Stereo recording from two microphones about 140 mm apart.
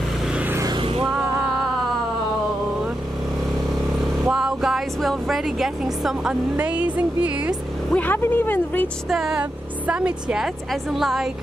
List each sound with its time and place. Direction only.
0.3 s vehicle: 10° right (ahead or behind)
0.7 s vehicle: 40° right (ahead or behind)
4.2 s music: 5° right (ahead or behind)
6.5 s speech: 10° right (ahead or behind)
7.9 s a woman's voice: 15° left (ahead or behind)
9.1 s a woman's voice: 5° right (ahead or behind)